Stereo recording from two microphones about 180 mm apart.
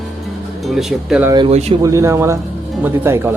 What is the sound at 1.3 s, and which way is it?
Speech, 25° right (ahead or behind).